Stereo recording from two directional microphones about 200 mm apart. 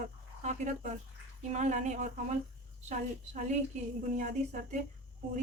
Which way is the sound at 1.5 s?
35° right (ahead or behind).